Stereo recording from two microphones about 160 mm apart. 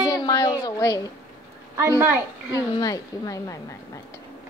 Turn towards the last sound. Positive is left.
turn(degrees=20)  # may be behind; listen again after turning